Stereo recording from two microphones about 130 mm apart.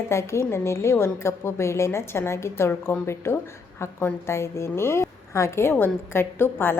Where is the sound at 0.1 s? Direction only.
20° left (ahead or behind).